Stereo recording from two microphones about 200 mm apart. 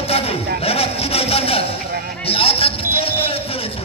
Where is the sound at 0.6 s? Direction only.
30° left (ahead or behind).